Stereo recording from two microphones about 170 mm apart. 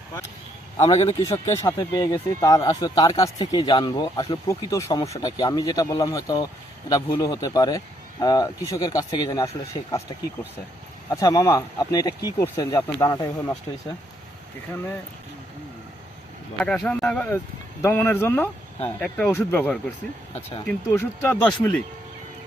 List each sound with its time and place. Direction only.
0.8 s a man's voice: 35° left (ahead or behind)
1.2 s speech: 20° left (ahead or behind)
11.1 s speech: 20° left (ahead or behind)
16.6 s speech: 5° left (ahead or behind)
20.9 s speech: 15° left (ahead or behind)